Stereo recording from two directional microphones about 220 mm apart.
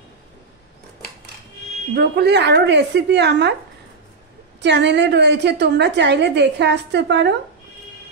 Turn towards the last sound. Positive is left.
turn(degrees=-50)  # may be behind; listen again after turning